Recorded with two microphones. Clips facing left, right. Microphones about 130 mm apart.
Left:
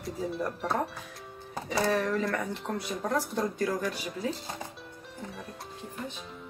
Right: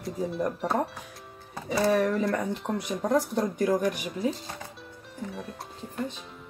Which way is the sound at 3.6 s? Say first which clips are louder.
Right 5 dB; 20° right (ahead or behind).